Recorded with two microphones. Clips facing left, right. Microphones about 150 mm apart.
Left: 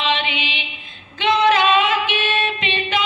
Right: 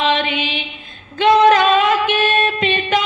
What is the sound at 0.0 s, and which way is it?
Mantra, 45° right (ahead or behind).